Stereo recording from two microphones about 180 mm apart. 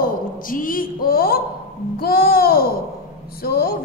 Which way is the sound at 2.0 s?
55° left (ahead or behind).